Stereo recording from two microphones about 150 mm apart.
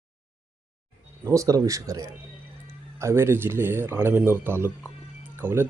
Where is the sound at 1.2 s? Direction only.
20° right (ahead or behind).